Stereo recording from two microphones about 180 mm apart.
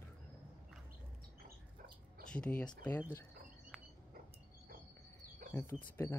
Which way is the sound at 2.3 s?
5° left (ahead or behind).